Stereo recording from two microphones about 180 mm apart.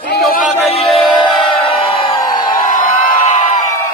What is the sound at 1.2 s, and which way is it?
Crowd, 30° left (ahead or behind).